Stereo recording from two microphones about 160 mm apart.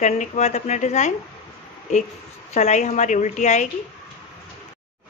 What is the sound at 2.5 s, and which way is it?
Speech, 45° left (ahead or behind).